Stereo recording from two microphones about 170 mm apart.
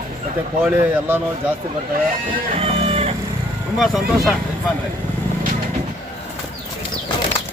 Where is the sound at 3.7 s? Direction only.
Centre (ahead or behind).